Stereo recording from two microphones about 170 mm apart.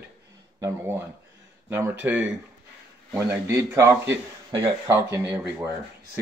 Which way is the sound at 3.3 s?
15° right (ahead or behind).